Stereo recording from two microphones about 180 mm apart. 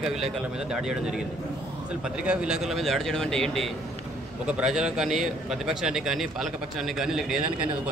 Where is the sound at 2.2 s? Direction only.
5° right (ahead or behind).